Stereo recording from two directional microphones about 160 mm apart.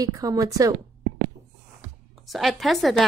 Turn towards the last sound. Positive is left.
turn(degrees=0)  # may be behind; listen again after turning